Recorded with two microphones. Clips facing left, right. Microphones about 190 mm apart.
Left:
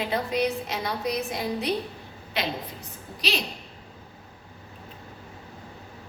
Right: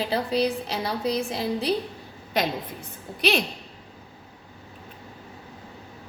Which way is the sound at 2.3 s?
45° right (ahead or behind).